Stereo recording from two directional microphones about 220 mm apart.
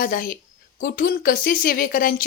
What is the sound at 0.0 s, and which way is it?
A woman's voice, 40° left (ahead or behind).